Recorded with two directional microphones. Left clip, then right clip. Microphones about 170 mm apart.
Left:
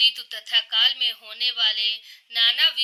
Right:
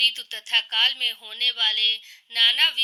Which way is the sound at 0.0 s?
15° right (ahead or behind).